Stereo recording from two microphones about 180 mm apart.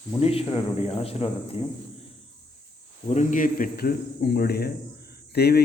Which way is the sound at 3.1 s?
45° left (ahead or behind).